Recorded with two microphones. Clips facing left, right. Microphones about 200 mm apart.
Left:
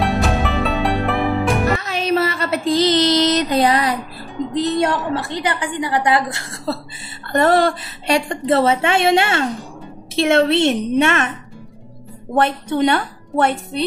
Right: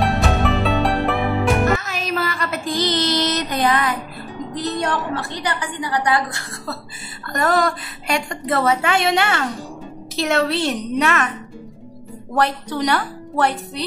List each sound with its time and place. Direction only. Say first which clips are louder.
0.0 s music: even; centre (ahead or behind)
1.8 s a sound: left 6 dB; 30° left (ahead or behind)
4.6 s a woman's voice: left 5 dB; 20° left (ahead or behind)
12.4 s a woman's voice: left 4 dB; 25° left (ahead or behind)